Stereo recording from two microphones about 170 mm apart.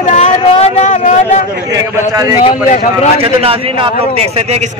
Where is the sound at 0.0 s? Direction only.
45° left (ahead or behind).